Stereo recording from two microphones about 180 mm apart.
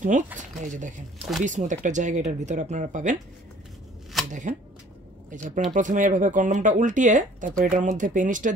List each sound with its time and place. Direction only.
0.0 s speech: 45° right (ahead or behind)
4.3 s speech: 45° right (ahead or behind)